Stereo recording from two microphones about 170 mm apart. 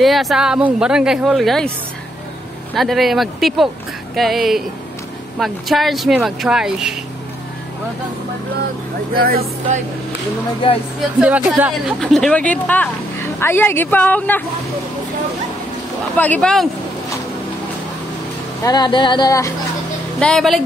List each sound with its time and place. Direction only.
0.0 s a woman's voice: centre (ahead or behind)
2.7 s a woman's voice: centre (ahead or behind)
9.1 s speech: 60° right (ahead or behind)
11.0 s speech: 5° right (ahead or behind)
12.0 s speech: centre (ahead or behind)
16.2 s a woman's voice: 5° left (ahead or behind)
18.6 s speech: 25° left (ahead or behind)
20.2 s a woman's voice: 5° left (ahead or behind)